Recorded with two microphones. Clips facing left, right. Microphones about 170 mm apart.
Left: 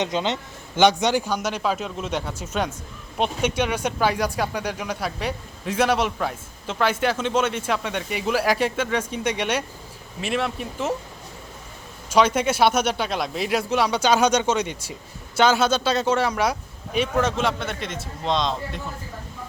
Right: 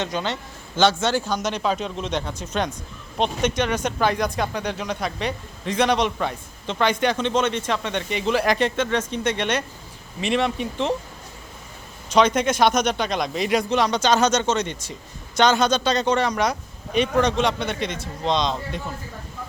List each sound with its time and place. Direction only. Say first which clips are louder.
0.0 s a man's voice: left 2 dB; 20° left (ahead or behind); by 10.9 s 5° left (ahead or behind)
12.0 s speech: right 1 dB; 10° left (ahead or behind)